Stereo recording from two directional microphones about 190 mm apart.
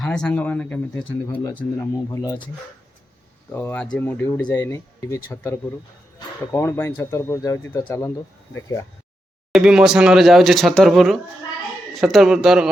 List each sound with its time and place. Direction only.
0.0 s speech: 5° left (ahead or behind)
2.0 s speech: 20° left (ahead or behind)
3.5 s speech: 10° left (ahead or behind)
9.5 s speech: 5° right (ahead or behind)